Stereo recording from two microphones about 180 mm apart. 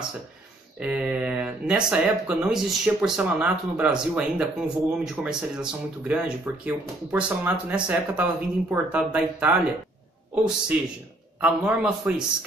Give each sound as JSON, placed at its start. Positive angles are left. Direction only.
{"t": 0.7, "sound": "a man's voice", "side_deg": -5}